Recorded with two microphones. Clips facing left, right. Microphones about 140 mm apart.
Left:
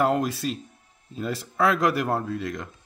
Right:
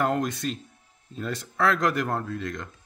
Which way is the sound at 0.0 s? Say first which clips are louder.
Left 2 dB; 5° left (ahead or behind).